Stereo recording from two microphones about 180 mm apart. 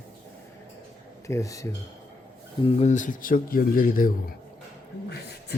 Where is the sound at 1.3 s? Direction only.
15° left (ahead or behind).